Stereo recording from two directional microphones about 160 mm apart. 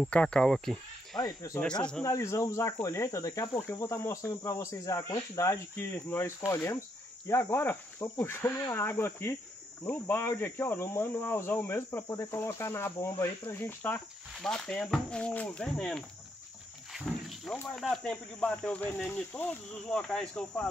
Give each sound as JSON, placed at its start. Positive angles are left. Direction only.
{"t": 0.0, "sound": "speech", "side_deg": 5}
{"t": 1.1, "sound": "cricket", "side_deg": 25}
{"t": 1.6, "sound": "speech", "side_deg": 5}
{"t": 2.0, "sound": "cricket", "side_deg": 20}
{"t": 7.2, "sound": "speech", "side_deg": 15}